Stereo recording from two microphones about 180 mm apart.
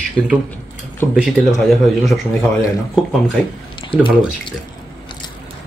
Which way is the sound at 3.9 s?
30° left (ahead or behind).